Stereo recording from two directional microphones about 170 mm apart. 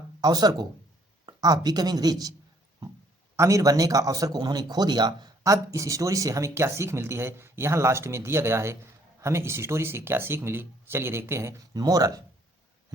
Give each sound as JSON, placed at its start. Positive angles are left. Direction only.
{"t": 0.2, "sound": "speech", "side_deg": -25}
{"t": 3.3, "sound": "a man's voice", "side_deg": -20}